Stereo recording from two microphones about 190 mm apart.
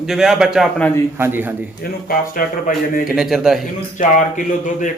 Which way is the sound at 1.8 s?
50° left (ahead or behind).